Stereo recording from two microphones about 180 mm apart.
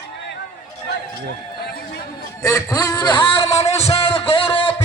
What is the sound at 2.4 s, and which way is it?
Speech, 20° left (ahead or behind).